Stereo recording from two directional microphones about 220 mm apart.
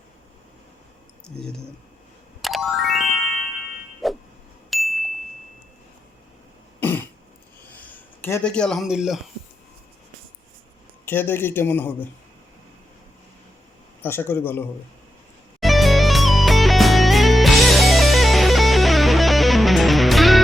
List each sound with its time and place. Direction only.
1.3 s speech: 5° left (ahead or behind)
2.4 s music: centre (ahead or behind)
4.0 s a sound: centre (ahead or behind)
4.7 s ding: centre (ahead or behind)
6.7 s throat clearing: 10° left (ahead or behind)
7.9 s speech: 10° left (ahead or behind)
11.0 s speech: 10° left (ahead or behind)
14.0 s speech: 10° left (ahead or behind)
15.6 s music: centre (ahead or behind)